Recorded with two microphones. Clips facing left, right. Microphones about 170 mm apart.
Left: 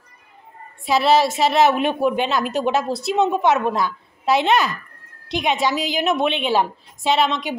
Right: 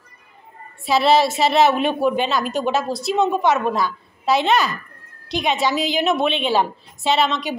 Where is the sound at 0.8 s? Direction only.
10° left (ahead or behind).